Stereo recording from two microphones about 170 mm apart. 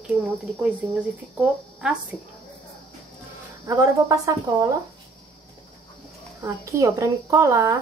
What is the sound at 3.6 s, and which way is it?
Speech, 20° right (ahead or behind).